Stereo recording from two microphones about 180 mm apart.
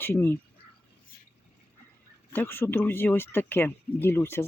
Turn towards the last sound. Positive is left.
turn(degrees=15)  # may be behind; listen again after turning